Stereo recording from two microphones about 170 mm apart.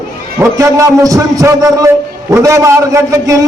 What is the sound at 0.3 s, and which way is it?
A man's voice, 15° right (ahead or behind).